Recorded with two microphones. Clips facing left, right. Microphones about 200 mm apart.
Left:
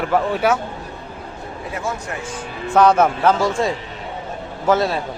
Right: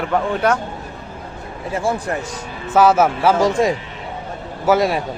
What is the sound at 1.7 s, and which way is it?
Speech, 30° right (ahead or behind).